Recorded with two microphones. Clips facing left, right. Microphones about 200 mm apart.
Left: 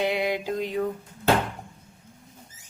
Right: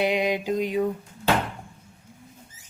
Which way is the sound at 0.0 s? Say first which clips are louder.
Right 2 dB; 15° right (ahead or behind).